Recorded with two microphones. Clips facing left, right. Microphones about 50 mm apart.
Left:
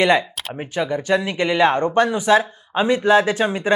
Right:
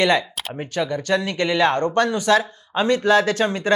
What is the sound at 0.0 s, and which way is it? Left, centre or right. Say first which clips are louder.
Speech: left 2 dB; centre.